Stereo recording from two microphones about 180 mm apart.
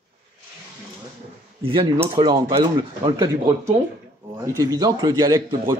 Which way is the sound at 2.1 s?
25° right (ahead or behind).